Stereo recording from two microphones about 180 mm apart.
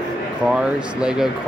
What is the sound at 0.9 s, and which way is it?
Speech, 5° right (ahead or behind).